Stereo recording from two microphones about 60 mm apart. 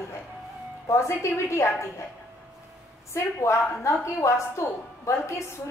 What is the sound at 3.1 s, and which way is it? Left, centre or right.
A woman's voice, left.